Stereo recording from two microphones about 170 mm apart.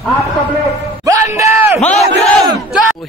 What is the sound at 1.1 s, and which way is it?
Speech, 20° right (ahead or behind).